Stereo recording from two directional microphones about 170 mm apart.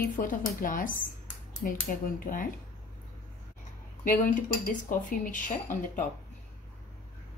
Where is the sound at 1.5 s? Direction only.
50° left (ahead or behind).